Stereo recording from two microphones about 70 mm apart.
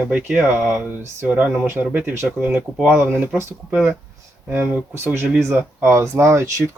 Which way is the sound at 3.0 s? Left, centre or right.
Right.